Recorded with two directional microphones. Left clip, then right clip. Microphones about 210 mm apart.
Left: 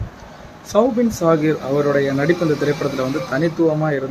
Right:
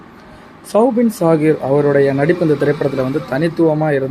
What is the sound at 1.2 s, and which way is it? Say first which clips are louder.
Speech: right 4 dB; 15° right (ahead or behind).